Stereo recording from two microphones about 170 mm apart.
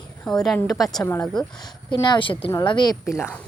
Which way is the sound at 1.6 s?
25° left (ahead or behind).